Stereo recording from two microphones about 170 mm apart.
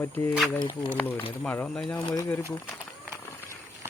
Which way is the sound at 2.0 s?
20° left (ahead or behind).